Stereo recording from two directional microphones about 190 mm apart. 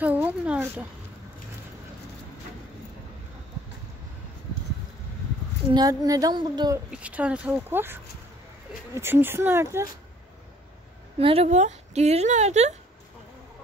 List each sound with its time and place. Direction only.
0.0 s speech: 10° right (ahead or behind)
5.7 s a woman's voice: 20° right (ahead or behind)
6.9 s speech: 5° right (ahead or behind)
11.1 s speech: 30° right (ahead or behind)